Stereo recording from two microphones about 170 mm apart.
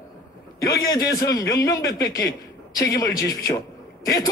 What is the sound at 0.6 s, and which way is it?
A man's voice, 20° left (ahead or behind).